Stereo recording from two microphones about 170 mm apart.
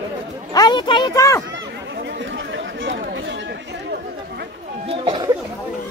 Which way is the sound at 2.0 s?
90° right.